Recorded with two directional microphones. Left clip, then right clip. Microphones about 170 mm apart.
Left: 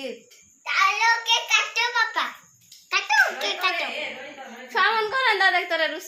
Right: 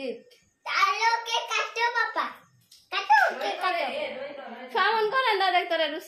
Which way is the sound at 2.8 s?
40° right (ahead or behind).